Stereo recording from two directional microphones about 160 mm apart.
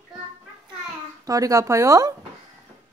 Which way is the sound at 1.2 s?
20° right (ahead or behind).